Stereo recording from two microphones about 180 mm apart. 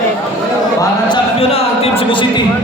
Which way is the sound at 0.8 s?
25° left (ahead or behind).